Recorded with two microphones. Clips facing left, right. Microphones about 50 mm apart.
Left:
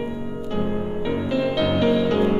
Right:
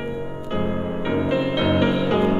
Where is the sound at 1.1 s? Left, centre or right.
Right.